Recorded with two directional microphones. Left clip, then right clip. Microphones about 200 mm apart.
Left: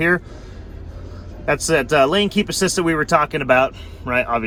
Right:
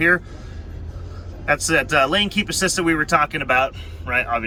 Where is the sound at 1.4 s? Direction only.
30° left (ahead or behind).